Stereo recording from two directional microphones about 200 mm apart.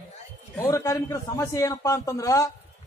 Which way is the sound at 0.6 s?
15° left (ahead or behind).